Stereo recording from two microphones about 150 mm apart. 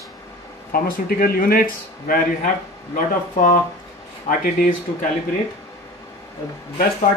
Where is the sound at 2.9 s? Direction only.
60° left (ahead or behind).